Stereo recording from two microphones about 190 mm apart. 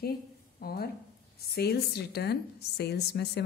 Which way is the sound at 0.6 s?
55° left (ahead or behind).